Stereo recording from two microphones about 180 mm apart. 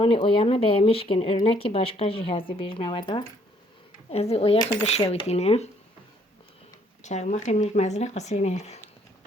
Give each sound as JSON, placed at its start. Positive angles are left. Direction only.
{"t": 0.0, "sound": "speech", "side_deg": 30}
{"t": 7.0, "sound": "speech", "side_deg": 40}